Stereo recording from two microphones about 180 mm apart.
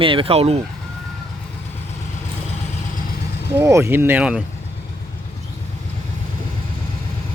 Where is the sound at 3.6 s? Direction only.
15° right (ahead or behind).